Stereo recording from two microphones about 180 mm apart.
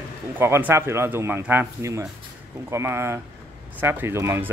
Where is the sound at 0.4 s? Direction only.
10° right (ahead or behind).